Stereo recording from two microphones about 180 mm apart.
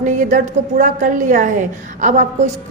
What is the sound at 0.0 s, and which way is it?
A woman's voice, 45° right (ahead or behind).